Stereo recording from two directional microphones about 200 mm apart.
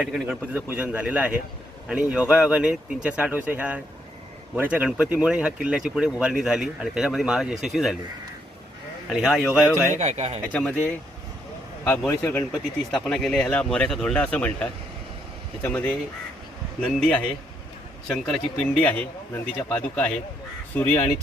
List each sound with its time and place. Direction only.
0.0 s a man's voice: 10° right (ahead or behind)
9.0 s speech: centre (ahead or behind)
9.6 s speech: 15° left (ahead or behind)
10.0 s speech: 35° right (ahead or behind)
10.5 s speech: 5° left (ahead or behind)
11.9 s speech: 10° left (ahead or behind)